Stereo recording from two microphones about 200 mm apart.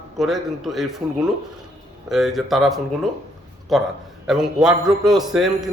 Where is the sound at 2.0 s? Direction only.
Centre (ahead or behind).